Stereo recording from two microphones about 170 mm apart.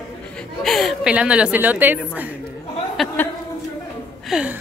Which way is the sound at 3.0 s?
Centre (ahead or behind).